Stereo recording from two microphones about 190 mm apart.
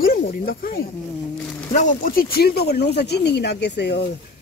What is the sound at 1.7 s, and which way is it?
Speech, 45° left (ahead or behind).